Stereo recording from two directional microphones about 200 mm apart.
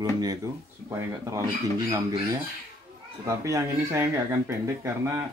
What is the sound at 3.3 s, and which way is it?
Speech, 15° right (ahead or behind).